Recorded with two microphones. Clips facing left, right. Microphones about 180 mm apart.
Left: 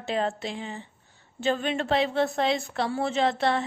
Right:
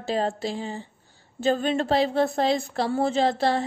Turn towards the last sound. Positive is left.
turn(degrees=-35)  # may be behind; listen again after turning